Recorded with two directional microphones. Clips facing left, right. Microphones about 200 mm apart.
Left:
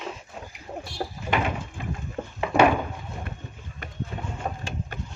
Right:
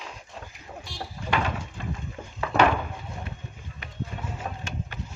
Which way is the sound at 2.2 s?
55° left (ahead or behind).